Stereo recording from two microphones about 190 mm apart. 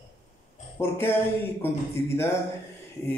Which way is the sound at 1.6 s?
15° left (ahead or behind).